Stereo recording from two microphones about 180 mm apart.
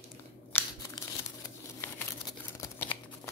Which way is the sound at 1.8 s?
15° left (ahead or behind).